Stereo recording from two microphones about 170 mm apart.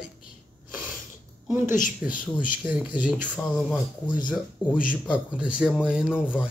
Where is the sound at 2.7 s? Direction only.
5° right (ahead or behind).